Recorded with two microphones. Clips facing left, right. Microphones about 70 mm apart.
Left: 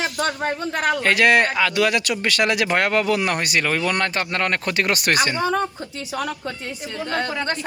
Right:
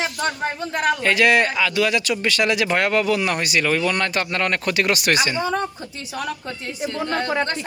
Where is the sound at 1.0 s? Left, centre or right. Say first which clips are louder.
Left 1 dB; left.